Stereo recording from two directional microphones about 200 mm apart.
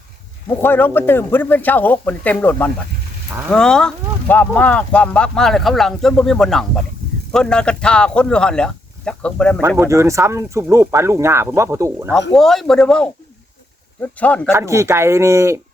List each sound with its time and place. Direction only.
0.6 s speech: 10° left (ahead or behind)
9.6 s speech: 15° right (ahead or behind)
12.3 s speech: centre (ahead or behind)
14.5 s speech: 15° right (ahead or behind)